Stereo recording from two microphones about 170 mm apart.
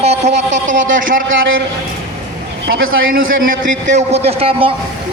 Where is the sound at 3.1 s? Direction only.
50° right (ahead or behind).